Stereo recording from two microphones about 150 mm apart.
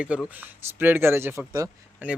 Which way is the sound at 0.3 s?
10° right (ahead or behind).